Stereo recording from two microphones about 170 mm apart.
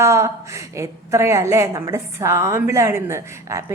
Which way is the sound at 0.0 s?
15° right (ahead or behind).